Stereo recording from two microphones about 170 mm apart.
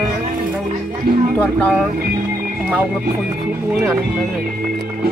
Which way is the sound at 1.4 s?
5° left (ahead or behind).